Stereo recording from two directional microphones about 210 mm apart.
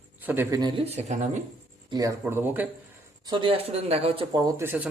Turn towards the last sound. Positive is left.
turn(degrees=-10)  # may be behind; listen again after turning